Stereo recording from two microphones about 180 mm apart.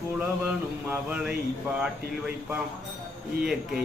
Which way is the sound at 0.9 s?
5° right (ahead or behind).